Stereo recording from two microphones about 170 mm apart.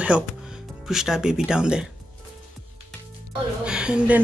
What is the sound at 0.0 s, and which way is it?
Music, 5° right (ahead or behind).